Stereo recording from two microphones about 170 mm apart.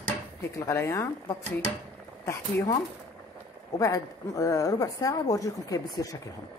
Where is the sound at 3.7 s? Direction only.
20° left (ahead or behind).